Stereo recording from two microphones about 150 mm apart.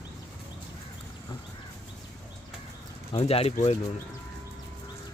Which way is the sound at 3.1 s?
40° left (ahead or behind).